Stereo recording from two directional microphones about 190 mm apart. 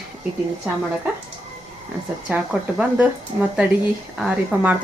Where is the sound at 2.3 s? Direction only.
5° right (ahead or behind).